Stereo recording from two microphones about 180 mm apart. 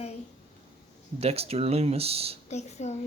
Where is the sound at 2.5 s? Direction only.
40° left (ahead or behind).